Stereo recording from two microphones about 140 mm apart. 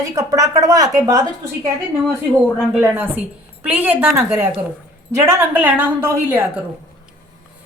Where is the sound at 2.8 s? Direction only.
15° right (ahead or behind).